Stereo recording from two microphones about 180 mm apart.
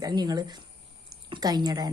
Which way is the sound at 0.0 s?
25° right (ahead or behind).